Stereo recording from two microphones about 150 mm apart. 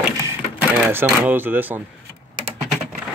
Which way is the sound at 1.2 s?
15° right (ahead or behind).